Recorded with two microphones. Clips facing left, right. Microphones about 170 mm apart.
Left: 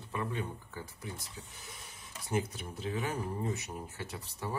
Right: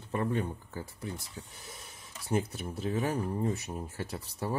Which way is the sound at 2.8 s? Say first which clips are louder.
Right 4 dB; 40° right (ahead or behind).